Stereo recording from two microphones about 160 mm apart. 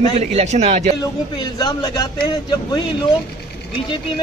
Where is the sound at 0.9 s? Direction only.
25° left (ahead or behind).